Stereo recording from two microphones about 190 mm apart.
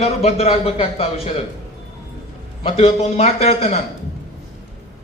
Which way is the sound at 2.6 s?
30° left (ahead or behind).